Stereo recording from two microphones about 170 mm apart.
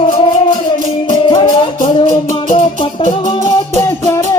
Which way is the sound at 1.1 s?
30° left (ahead or behind).